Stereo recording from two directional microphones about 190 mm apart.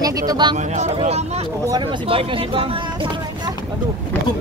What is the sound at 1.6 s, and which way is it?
Speech, 20° right (ahead or behind).